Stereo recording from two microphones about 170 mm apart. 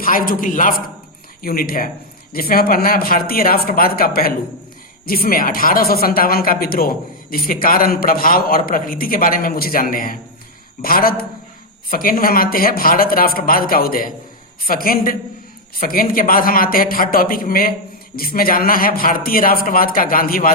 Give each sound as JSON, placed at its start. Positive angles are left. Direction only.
{"t": 0.0, "sound": "a man's voice", "side_deg": 55}